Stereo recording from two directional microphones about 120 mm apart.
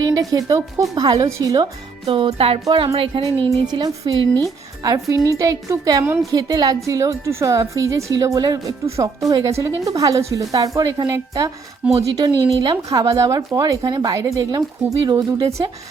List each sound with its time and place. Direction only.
0.0 s a woman's voice: 30° right (ahead or behind)
2.0 s a woman's voice: 45° right (ahead or behind); by 15.6 s 25° right (ahead or behind)